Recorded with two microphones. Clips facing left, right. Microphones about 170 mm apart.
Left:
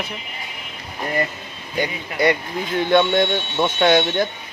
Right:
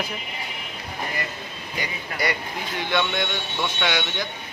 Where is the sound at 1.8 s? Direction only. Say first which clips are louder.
Left 9 dB; 55° left (ahead or behind).